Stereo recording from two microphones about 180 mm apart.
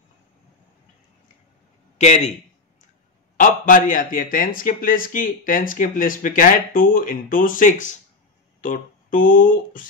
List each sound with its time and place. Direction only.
2.0 s a man's voice: 40° left (ahead or behind)
3.3 s a man's voice: 45° left (ahead or behind)